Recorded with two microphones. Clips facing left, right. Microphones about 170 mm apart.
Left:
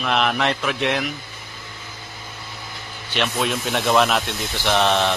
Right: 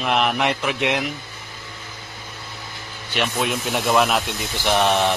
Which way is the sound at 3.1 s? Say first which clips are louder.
Even; 10° right (ahead or behind).